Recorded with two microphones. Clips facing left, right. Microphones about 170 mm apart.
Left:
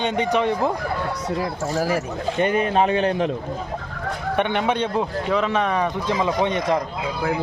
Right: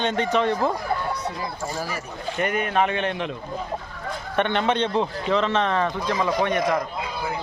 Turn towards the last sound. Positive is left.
turn(degrees=25)  # may be behind; listen again after turning